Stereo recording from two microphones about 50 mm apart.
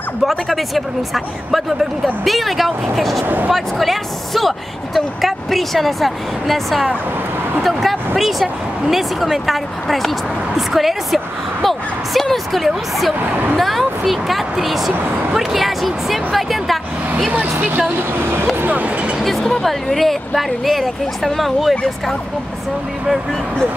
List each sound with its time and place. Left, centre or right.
0.2 s speech: centre
18.2 s speech: right
18.7 s a sound: right
19.2 s speech: centre